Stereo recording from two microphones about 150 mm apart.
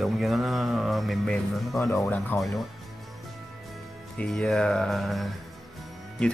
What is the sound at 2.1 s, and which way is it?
Speech, 5° left (ahead or behind).